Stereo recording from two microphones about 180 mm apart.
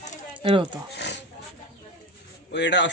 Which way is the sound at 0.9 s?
75° left (ahead or behind).